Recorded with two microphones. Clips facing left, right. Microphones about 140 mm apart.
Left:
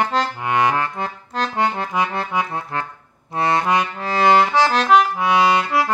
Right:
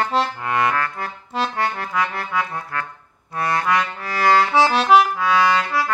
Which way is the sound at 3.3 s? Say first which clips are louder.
Left 2 dB; 25° left (ahead or behind).